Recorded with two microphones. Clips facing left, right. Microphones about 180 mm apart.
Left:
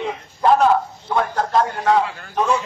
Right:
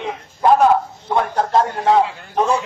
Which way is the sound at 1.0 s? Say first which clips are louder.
Right 3 dB; 20° right (ahead or behind).